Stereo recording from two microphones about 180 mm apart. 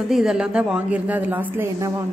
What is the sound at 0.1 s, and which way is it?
A woman's voice, centre (ahead or behind).